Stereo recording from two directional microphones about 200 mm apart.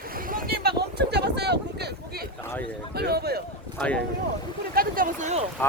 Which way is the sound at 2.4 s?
10° left (ahead or behind).